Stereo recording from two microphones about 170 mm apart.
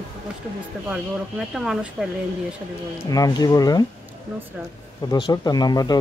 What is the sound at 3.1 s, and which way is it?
Speech, 20° left (ahead or behind).